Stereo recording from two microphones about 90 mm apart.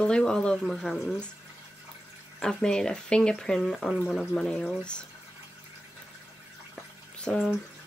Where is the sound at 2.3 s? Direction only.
10° left (ahead or behind).